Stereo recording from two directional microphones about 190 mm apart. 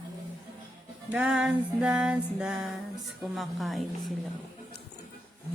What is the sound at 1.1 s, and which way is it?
Music, 5° right (ahead or behind).